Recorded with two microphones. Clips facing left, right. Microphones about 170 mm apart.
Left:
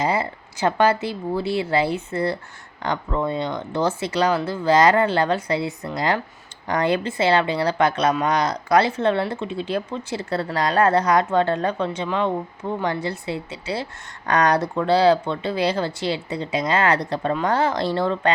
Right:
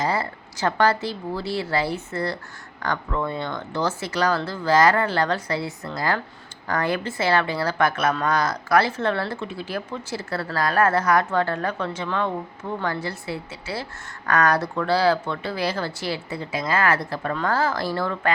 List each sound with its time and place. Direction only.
0.0 s a woman's voice: 15° left (ahead or behind)